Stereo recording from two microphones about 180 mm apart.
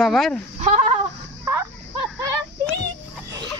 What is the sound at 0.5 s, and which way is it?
Speech, 40° right (ahead or behind).